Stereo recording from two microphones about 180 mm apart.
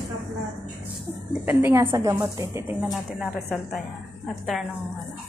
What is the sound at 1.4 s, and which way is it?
A woman's voice, 15° right (ahead or behind).